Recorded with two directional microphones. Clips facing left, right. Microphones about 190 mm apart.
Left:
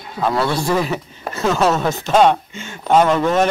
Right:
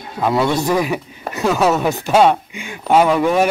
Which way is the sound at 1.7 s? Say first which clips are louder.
Right 1 dB; 15° right (ahead or behind).